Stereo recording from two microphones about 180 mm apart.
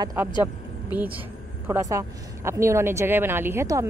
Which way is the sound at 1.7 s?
15° right (ahead or behind).